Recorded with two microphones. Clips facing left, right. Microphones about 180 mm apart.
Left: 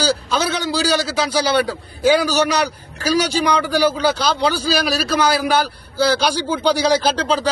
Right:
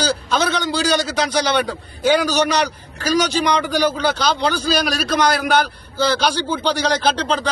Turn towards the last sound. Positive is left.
turn(degrees=5)  # may be behind; listen again after turning